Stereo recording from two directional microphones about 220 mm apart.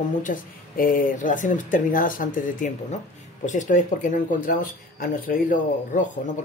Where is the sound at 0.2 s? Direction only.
40° left (ahead or behind).